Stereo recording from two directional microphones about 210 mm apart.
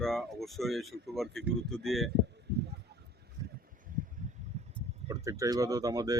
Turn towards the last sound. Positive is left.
turn(degrees=-15)  # may be behind; listen again after turning